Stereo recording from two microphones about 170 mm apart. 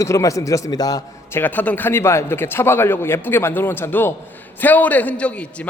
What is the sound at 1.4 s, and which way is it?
A man's voice, 10° left (ahead or behind).